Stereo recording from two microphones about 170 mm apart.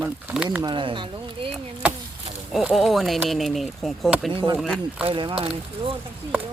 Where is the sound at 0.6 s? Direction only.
30° right (ahead or behind).